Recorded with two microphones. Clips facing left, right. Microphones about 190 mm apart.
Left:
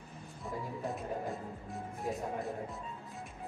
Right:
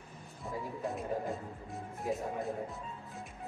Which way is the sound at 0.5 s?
Centre (ahead or behind).